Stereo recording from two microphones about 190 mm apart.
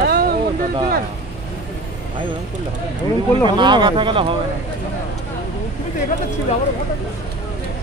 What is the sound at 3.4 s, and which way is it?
Speech, 25° right (ahead or behind).